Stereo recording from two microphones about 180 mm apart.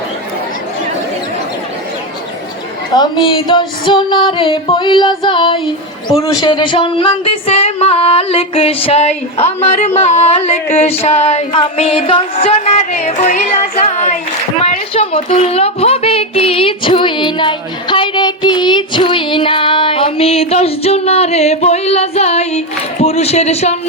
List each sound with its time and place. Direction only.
2.9 s music: 25° left (ahead or behind)
6.1 s speech: 25° left (ahead or behind)